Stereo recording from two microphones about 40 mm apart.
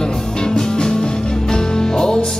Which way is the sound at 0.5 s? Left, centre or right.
Centre.